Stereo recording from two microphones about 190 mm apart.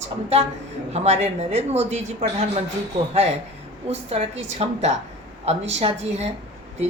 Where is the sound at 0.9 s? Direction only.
35° right (ahead or behind).